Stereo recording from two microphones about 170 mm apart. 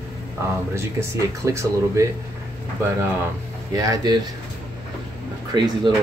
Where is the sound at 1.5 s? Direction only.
15° right (ahead or behind).